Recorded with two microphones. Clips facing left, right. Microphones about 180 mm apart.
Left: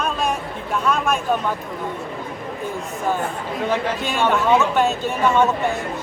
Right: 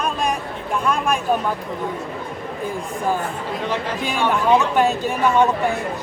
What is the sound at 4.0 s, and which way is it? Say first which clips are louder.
Speech: right 3 dB; 10° right (ahead or behind).